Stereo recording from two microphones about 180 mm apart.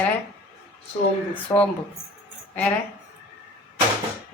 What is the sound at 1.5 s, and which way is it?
Speech, 10° left (ahead or behind).